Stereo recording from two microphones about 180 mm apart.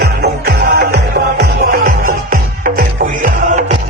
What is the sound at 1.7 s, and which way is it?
Music, 50° right (ahead or behind).